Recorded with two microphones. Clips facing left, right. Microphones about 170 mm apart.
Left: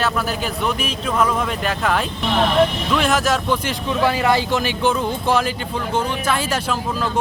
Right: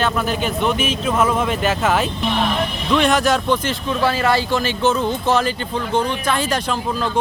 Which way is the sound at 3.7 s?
15° left (ahead or behind).